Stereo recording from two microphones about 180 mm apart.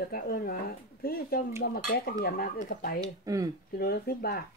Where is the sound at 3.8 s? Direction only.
55° left (ahead or behind).